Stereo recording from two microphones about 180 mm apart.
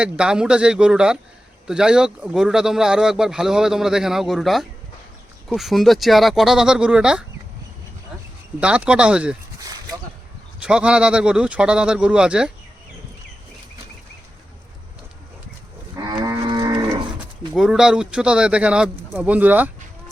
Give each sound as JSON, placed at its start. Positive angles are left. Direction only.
{"t": 0.0, "sound": "speech", "side_deg": -5}
{"t": 8.6, "sound": "speech", "side_deg": -5}
{"t": 9.6, "sound": "a sound", "side_deg": -20}
{"t": 10.6, "sound": "speech", "side_deg": -5}
{"t": 16.2, "sound": "livestock", "side_deg": -20}
{"t": 17.5, "sound": "speech", "side_deg": -5}